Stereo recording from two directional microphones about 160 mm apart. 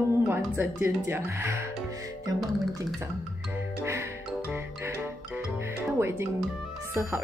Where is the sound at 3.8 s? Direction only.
15° right (ahead or behind).